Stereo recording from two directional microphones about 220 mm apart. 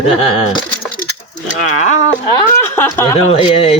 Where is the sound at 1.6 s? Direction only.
35° left (ahead or behind).